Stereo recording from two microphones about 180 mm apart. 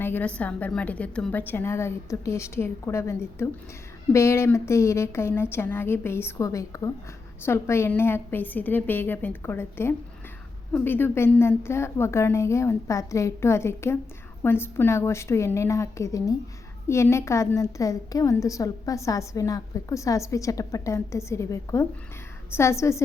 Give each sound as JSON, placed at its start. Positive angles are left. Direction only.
{"t": 0.0, "sound": "a woman's voice", "side_deg": 10}